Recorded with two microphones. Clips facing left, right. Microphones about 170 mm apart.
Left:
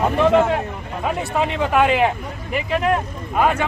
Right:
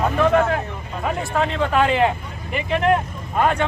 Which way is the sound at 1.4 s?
10° left (ahead or behind).